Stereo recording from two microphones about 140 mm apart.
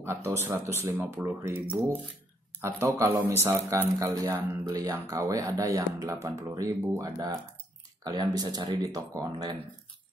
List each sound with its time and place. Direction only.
0.0 s speech: 20° right (ahead or behind)